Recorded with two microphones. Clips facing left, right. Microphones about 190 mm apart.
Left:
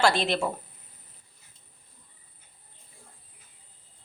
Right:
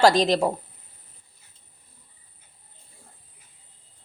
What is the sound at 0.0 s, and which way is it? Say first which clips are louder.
Speech: right 6 dB; 40° right (ahead or behind).